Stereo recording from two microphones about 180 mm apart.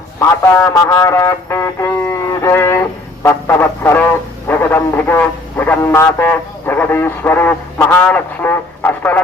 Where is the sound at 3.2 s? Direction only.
15° left (ahead or behind).